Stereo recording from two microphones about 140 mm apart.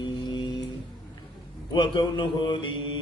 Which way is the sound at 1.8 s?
35° left (ahead or behind).